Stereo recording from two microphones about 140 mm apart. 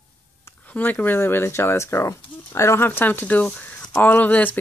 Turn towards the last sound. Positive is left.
turn(degrees=10)  # may be behind; listen again after turning